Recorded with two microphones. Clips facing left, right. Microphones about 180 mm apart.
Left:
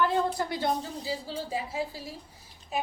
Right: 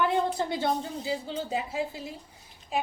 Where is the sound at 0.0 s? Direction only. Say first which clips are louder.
Even; 20° right (ahead or behind).